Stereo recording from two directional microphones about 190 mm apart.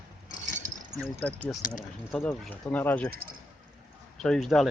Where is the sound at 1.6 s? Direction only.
45° left (ahead or behind).